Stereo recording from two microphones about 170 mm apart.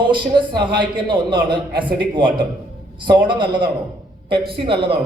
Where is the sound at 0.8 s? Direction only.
30° right (ahead or behind).